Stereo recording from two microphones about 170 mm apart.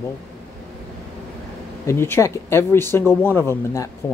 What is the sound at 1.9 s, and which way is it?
Speech, 15° left (ahead or behind).